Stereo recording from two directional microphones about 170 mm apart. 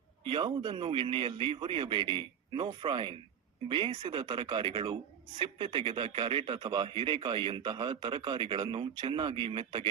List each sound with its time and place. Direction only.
0.3 s a man's voice: 30° right (ahead or behind)